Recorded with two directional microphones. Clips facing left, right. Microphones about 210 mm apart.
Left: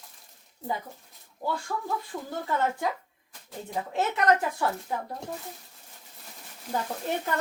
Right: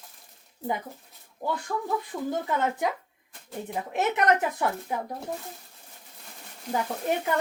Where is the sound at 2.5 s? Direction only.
20° right (ahead or behind).